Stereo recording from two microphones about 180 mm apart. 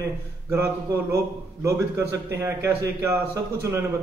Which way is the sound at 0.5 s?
15° right (ahead or behind).